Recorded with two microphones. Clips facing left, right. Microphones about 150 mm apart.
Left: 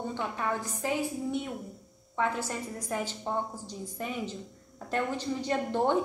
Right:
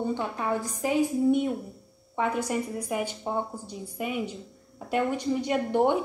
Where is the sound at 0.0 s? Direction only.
15° right (ahead or behind).